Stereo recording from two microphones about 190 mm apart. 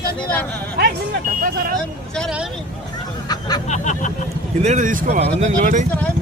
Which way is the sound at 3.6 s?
40° left (ahead or behind).